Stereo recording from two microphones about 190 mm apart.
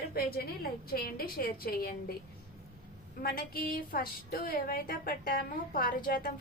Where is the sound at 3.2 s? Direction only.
50° left (ahead or behind).